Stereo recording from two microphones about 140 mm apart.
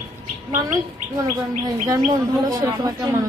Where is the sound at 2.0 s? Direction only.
25° right (ahead or behind).